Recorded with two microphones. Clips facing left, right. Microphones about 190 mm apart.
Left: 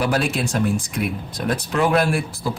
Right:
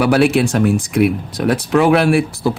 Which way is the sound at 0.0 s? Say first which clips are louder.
Right 8 dB; 70° right (ahead or behind).